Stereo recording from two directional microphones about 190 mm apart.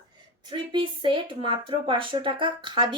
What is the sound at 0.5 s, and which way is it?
Speech, 25° right (ahead or behind).